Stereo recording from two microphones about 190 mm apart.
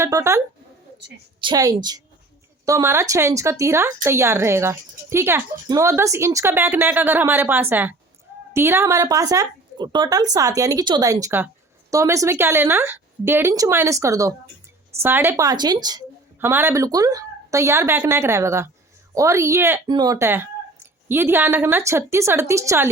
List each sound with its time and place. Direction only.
0.0 s a woman's voice: 15° right (ahead or behind)